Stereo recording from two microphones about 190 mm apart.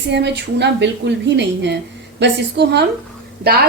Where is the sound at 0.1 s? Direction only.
65° right (ahead or behind).